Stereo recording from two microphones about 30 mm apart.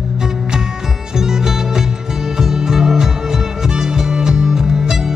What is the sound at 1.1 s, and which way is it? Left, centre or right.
Music, centre.